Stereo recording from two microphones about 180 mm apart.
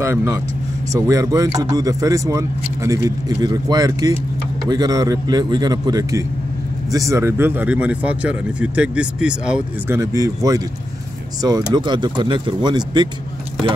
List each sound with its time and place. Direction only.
0.0 s speech: 15° right (ahead or behind)
9.9 s speech: 20° right (ahead or behind)